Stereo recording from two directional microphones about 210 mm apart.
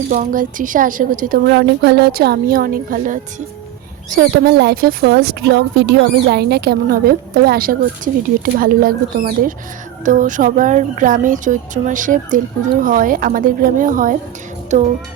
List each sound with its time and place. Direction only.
0.1 s a woman's voice: 40° right (ahead or behind)